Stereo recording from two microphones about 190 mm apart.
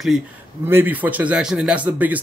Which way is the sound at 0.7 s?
10° right (ahead or behind).